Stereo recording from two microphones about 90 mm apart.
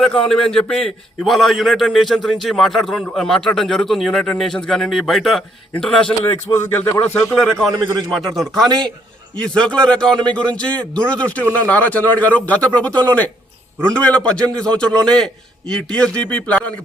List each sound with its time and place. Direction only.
0.3 s a man's voice: 5° left (ahead or behind)
6.5 s a man's voice: 25° left (ahead or behind)
7.9 s a man's voice: centre (ahead or behind)